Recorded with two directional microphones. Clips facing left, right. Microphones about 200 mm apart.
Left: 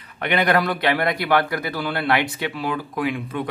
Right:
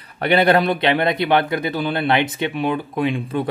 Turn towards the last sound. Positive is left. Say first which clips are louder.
# right 4 dB
turn(degrees=-30)  # may be behind; listen again after turning